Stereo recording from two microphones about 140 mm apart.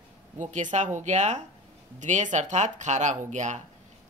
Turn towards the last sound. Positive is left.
turn(degrees=-55)  # may be behind; listen again after turning